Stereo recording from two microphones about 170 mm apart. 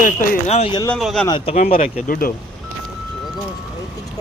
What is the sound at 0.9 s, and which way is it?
Speech, centre (ahead or behind).